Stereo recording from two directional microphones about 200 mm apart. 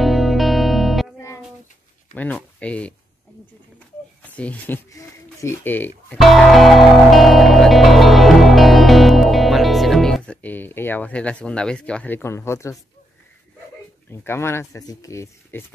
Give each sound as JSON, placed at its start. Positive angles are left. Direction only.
{"t": 0.0, "sound": "music", "side_deg": 0}
{"t": 2.1, "sound": "speech", "side_deg": 5}
{"t": 4.2, "sound": "speech", "side_deg": 5}
{"t": 6.1, "sound": "music", "side_deg": 0}
{"t": 14.2, "sound": "speech", "side_deg": 10}